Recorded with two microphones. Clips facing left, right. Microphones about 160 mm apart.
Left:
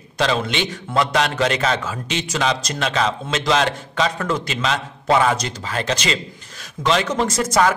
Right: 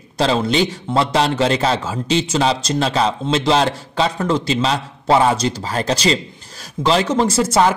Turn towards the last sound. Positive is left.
turn(degrees=-30)  # may be behind; listen again after turning